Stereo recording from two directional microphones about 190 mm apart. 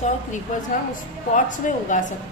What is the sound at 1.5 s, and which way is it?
Speech, 40° left (ahead or behind).